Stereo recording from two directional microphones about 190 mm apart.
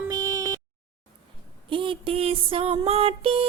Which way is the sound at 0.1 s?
15° right (ahead or behind).